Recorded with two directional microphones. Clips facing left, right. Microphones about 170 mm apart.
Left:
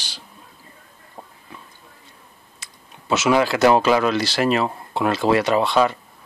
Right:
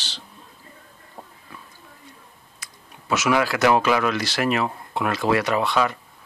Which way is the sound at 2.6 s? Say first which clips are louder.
Even; 25° left (ahead or behind).